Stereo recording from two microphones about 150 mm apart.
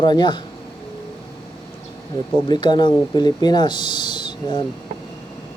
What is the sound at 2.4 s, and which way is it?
Speech, 30° left (ahead or behind).